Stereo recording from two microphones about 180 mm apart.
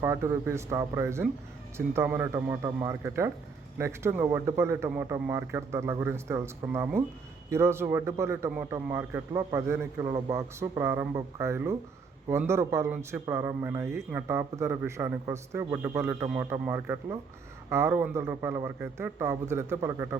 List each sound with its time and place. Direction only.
0.0 s a man's voice: 15° right (ahead or behind)
10.1 s speech: 25° right (ahead or behind)
10.3 s a man's voice: 15° right (ahead or behind)